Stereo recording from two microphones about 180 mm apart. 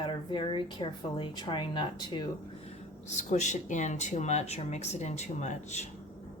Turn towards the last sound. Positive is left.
turn(degrees=40)  # may be behind; listen again after turning